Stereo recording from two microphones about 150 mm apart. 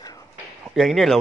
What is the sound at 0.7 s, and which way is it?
Speech, centre (ahead or behind).